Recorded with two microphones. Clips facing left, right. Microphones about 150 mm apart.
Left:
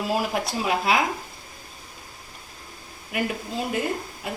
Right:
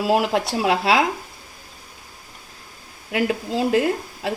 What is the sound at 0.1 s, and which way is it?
Speech, 75° right (ahead or behind).